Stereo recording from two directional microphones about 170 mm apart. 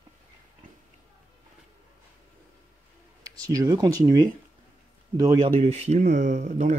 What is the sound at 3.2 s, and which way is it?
Speech, 20° right (ahead or behind).